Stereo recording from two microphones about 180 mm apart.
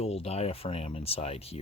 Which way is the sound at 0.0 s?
35° left (ahead or behind).